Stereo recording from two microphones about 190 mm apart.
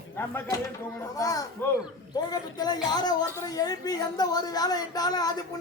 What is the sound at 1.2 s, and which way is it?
A woman's voice, 20° left (ahead or behind).